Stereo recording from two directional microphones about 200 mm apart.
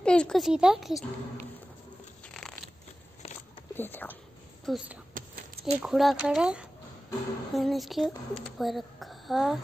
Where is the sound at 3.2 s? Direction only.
30° left (ahead or behind).